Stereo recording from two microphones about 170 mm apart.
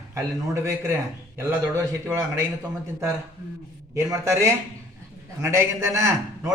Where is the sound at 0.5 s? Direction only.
15° right (ahead or behind).